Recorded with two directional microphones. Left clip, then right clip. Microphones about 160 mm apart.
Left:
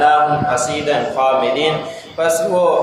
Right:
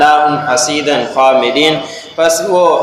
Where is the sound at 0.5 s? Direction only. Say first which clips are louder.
Right 4 dB; 25° right (ahead or behind).